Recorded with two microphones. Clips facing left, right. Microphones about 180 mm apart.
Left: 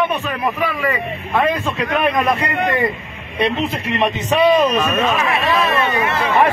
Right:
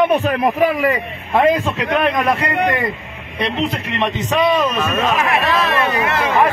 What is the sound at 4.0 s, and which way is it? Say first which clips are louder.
Speech: left 2 dB; 10° left (ahead or behind).